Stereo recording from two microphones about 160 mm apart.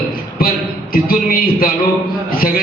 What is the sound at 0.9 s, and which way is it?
A man's voice, 65° left (ahead or behind).